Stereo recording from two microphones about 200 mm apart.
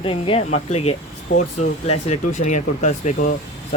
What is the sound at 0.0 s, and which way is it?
Speech, 25° left (ahead or behind).